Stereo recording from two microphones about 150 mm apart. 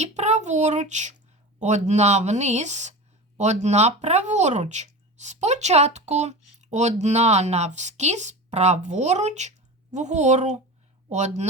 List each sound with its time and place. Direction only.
0.0 s child singing: 50° right (ahead or behind)
1.5 s speech: 50° right (ahead or behind)